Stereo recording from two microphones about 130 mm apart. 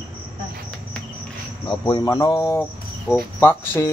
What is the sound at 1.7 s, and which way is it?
Speech, 30° left (ahead or behind).